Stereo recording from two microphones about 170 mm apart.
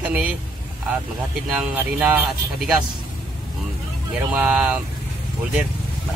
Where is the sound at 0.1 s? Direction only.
5° right (ahead or behind).